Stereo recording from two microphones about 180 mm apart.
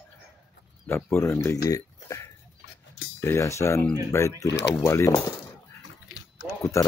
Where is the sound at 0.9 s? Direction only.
15° left (ahead or behind).